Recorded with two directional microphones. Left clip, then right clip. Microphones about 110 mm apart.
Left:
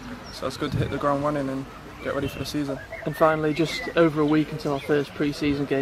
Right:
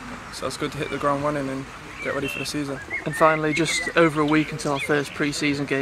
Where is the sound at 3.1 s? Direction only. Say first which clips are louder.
Right 2 dB; 30° right (ahead or behind).